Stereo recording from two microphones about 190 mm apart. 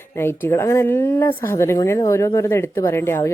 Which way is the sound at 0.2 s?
15° left (ahead or behind).